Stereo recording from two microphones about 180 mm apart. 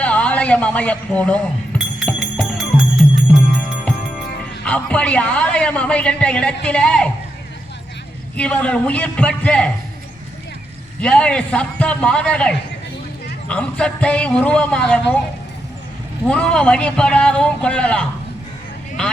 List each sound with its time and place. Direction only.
0.0 s speech: 5° left (ahead or behind)
2.0 s music: centre (ahead or behind)
4.6 s a man's voice: 5° left (ahead or behind)
8.4 s a man's voice: 5° left (ahead or behind)
11.0 s speech: 5° left (ahead or behind)
16.2 s speech: 5° left (ahead or behind)